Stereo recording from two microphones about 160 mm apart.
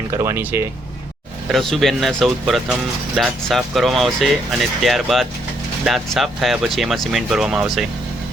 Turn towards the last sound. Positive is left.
turn(degrees=-5)  # may be behind; listen again after turning